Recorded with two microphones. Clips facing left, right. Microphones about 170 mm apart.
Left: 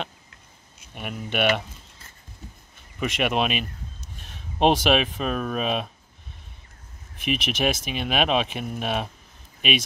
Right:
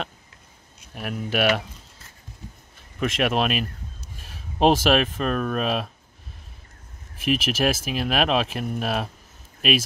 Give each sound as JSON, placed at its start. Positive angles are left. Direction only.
{"t": 0.9, "sound": "speech", "side_deg": 0}
{"t": 3.0, "sound": "speech", "side_deg": 0}
{"t": 7.2, "sound": "speech", "side_deg": -5}